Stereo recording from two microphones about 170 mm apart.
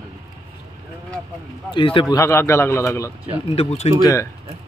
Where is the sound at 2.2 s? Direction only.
15° left (ahead or behind).